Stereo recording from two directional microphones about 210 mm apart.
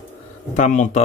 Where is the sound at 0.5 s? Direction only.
35° left (ahead or behind).